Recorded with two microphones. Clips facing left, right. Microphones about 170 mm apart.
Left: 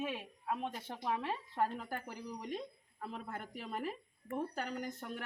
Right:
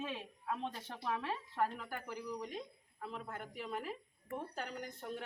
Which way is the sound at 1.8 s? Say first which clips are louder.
Left 2 dB; 35° left (ahead or behind).